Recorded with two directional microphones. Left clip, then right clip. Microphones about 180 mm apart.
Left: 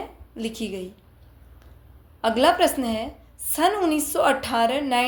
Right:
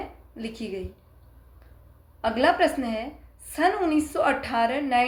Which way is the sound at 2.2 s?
50° left (ahead or behind).